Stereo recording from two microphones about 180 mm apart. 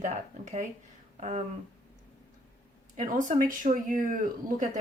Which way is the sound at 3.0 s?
40° right (ahead or behind).